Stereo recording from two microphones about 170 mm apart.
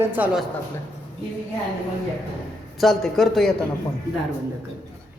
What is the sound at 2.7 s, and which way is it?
Speech, centre (ahead or behind).